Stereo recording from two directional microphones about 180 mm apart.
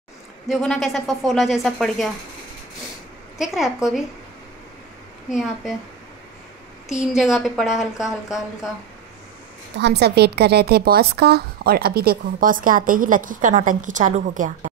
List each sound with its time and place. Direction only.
0.5 s speech: centre (ahead or behind)
3.3 s speech: centre (ahead or behind)
5.3 s speech: 5° right (ahead or behind)
6.9 s speech: 5° right (ahead or behind)
9.8 s a woman's voice: 65° right (ahead or behind); by 14.7 s 45° right (ahead or behind)